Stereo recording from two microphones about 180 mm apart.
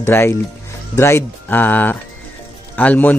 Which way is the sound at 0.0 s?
15° left (ahead or behind).